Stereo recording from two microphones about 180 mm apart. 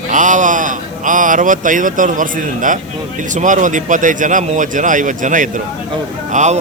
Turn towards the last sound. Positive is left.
turn(degrees=-40)  # may be behind; listen again after turning